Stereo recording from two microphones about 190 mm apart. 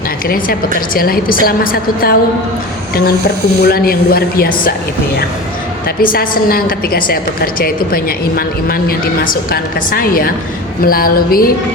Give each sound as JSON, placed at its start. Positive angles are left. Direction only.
{"t": 0.9, "sound": "a woman's voice", "side_deg": 50}
{"t": 6.0, "sound": "a woman's voice", "side_deg": 50}